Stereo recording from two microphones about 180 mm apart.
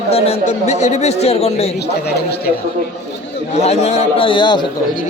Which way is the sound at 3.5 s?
35° left (ahead or behind).